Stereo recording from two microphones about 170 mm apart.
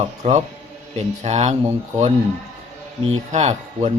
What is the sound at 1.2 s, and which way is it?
Speech, 40° right (ahead or behind).